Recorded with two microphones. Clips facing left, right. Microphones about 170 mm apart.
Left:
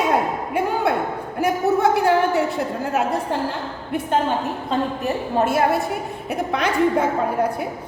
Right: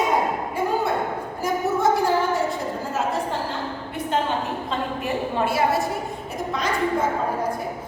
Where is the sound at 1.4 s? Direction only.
65° left (ahead or behind).